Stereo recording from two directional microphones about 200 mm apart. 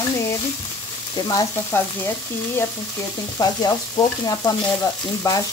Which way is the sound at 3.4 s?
20° left (ahead or behind).